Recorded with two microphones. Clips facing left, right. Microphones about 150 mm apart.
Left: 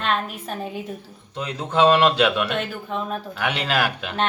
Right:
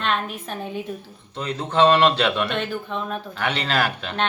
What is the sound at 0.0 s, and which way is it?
A woman's voice, 5° left (ahead or behind).